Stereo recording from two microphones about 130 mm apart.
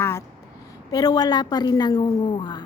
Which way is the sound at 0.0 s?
20° left (ahead or behind).